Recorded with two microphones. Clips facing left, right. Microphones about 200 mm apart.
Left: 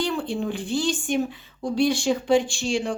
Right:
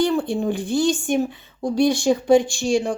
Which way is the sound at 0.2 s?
40° right (ahead or behind).